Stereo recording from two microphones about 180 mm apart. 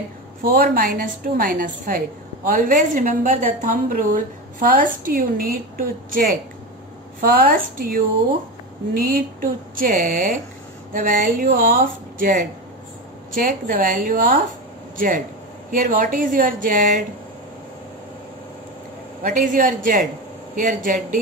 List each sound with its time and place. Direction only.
0.4 s a woman's voice: 55° right (ahead or behind)
9.0 s a woman's voice: 50° right (ahead or behind)
19.2 s a woman's voice: 50° right (ahead or behind)